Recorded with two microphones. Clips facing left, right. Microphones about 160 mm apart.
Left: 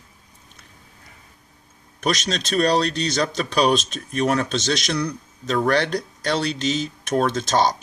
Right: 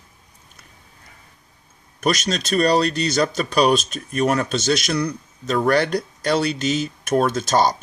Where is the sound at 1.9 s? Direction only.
5° right (ahead or behind).